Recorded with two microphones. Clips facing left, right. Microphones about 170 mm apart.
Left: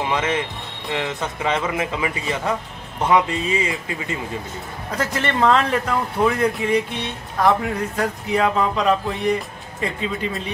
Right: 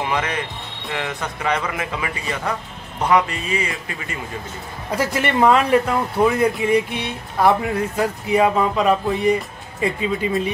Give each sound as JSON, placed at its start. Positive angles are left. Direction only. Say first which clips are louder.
{"t": 0.0, "sound": "a man's voice", "louder": "left 1 dB", "side_deg": 20}
{"t": 4.9, "sound": "speech", "louder": "right 3 dB", "side_deg": -10}